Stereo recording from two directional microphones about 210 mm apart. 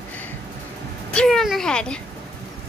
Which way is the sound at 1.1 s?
5° left (ahead or behind).